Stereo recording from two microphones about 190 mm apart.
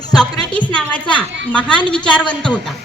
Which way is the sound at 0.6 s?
5° left (ahead or behind).